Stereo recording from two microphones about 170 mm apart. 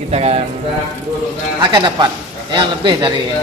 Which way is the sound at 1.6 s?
25° right (ahead or behind).